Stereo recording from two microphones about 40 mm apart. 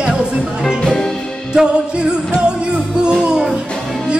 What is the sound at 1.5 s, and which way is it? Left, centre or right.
Music, centre.